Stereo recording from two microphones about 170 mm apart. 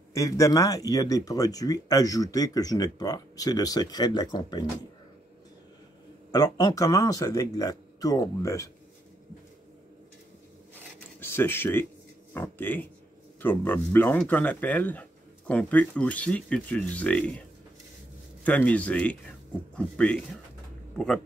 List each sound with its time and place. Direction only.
0.1 s speech: 20° left (ahead or behind)
6.3 s speech: 20° left (ahead or behind)
10.7 s zipper: 15° left (ahead or behind)
12.4 s speech: 10° left (ahead or behind)
18.4 s speech: 10° left (ahead or behind)